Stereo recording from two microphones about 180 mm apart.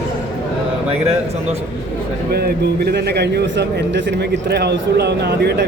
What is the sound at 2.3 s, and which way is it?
A man's voice, 60° right (ahead or behind).